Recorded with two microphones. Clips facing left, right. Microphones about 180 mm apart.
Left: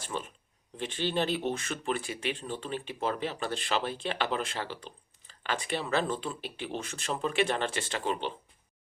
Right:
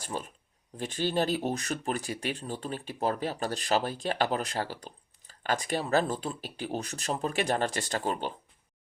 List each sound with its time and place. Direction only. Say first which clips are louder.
0.0 s speech: right 1 dB; 40° right (ahead or behind)